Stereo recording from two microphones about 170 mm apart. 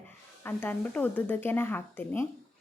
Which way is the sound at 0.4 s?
10° left (ahead or behind).